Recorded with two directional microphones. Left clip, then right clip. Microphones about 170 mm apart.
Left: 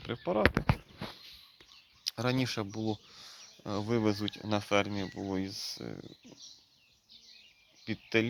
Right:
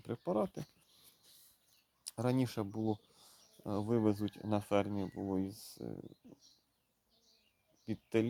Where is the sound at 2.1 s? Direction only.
20° right (ahead or behind).